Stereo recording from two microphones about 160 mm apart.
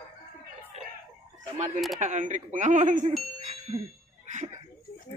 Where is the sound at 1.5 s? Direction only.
50° right (ahead or behind).